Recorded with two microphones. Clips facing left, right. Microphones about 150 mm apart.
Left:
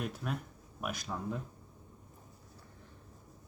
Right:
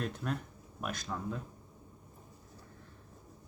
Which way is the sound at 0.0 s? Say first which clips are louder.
Right 1 dB; 5° left (ahead or behind).